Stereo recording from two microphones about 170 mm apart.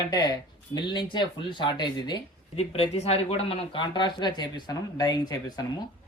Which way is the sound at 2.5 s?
35° left (ahead or behind).